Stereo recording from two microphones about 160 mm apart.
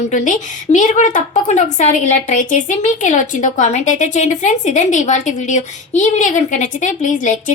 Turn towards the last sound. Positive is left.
turn(degrees=55)  # may be behind; listen again after turning